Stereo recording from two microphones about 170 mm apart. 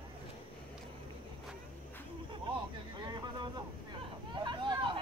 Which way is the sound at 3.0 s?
25° right (ahead or behind).